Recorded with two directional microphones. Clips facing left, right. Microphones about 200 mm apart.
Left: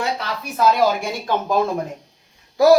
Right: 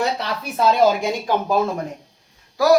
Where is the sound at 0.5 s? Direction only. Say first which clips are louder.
Right 1 dB; 30° right (ahead or behind).